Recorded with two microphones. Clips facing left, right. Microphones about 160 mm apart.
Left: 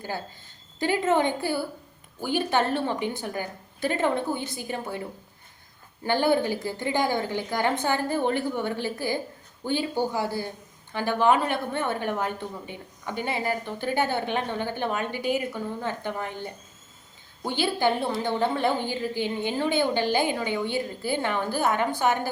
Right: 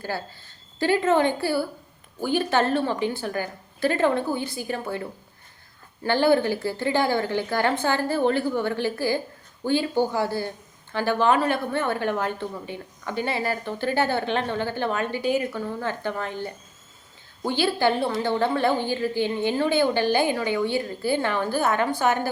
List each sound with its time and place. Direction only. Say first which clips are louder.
0.8 s a woman's voice: right 3 dB; 20° left (ahead or behind)
6.1 s a woman's voice: right 3 dB; 15° left (ahead or behind)